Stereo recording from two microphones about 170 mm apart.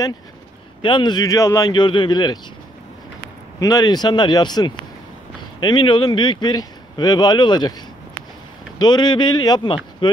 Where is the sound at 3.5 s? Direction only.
20° left (ahead or behind).